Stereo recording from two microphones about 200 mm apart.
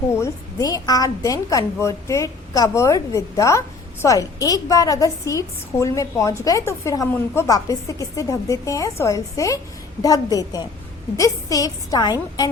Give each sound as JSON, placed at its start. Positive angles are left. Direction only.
{"t": 0.1, "sound": "a woman's voice", "side_deg": 15}